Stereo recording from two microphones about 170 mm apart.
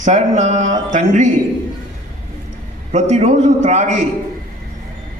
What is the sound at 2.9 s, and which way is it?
A man's voice, 40° right (ahead or behind).